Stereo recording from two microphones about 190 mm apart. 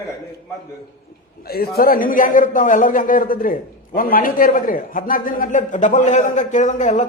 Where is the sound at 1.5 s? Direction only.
55° left (ahead or behind).